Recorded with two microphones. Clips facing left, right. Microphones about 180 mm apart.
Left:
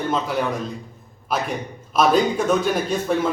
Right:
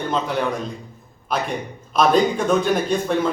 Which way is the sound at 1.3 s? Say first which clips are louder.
Even; 5° left (ahead or behind).